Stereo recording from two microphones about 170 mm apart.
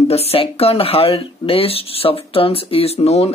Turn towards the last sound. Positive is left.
turn(degrees=35)  # may be behind; listen again after turning